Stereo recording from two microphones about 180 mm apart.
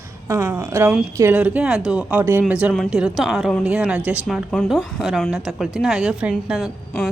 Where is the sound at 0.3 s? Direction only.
15° right (ahead or behind).